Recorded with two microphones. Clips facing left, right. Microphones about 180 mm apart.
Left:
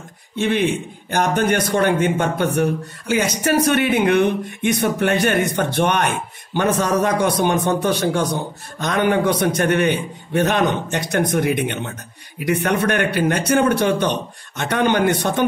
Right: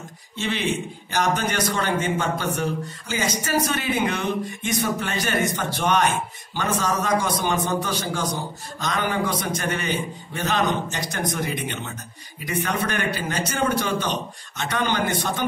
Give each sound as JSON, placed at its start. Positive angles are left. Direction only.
{"t": 0.4, "sound": "a man's voice", "side_deg": 55}